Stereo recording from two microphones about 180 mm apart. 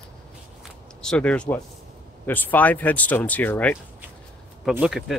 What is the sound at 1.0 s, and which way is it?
Speech, 5° left (ahead or behind).